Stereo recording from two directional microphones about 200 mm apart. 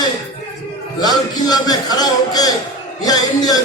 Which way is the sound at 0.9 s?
20° left (ahead or behind).